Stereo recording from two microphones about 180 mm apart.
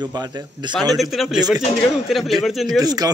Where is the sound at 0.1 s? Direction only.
25° right (ahead or behind).